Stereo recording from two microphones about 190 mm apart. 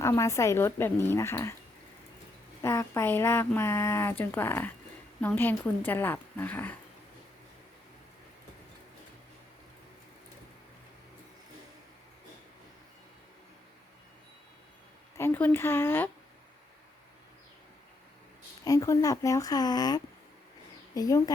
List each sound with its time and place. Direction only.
0.0 s speech: 15° left (ahead or behind)
2.6 s speech: 15° left (ahead or behind)
15.2 s speech: 10° left (ahead or behind)
18.6 s speech: 20° left (ahead or behind)